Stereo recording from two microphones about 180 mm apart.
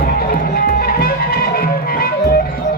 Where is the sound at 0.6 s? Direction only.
55° left (ahead or behind).